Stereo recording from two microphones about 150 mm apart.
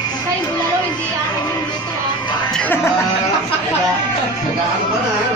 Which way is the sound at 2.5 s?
15° left (ahead or behind).